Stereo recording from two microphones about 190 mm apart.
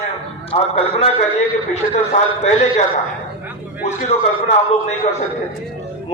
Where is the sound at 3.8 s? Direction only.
40° left (ahead or behind).